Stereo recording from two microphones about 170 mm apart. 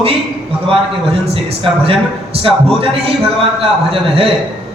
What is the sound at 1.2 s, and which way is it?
A man's voice, 35° right (ahead or behind).